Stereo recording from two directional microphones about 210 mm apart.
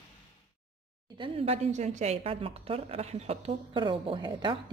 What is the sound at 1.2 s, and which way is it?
A woman's voice, 30° right (ahead or behind).